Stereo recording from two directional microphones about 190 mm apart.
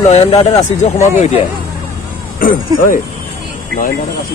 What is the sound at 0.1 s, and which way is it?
Speech, 35° left (ahead or behind).